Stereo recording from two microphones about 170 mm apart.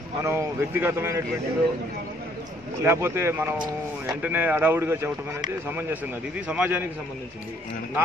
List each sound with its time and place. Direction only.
0.2 s a man's voice: 15° right (ahead or behind)
2.8 s a man's voice: 15° right (ahead or behind)